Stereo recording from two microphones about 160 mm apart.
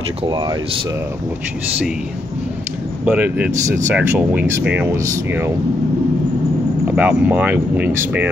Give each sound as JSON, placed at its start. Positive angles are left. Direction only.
{"t": 0.2, "sound": "speech", "side_deg": -30}
{"t": 3.1, "sound": "speech", "side_deg": -10}
{"t": 7.0, "sound": "speech", "side_deg": -10}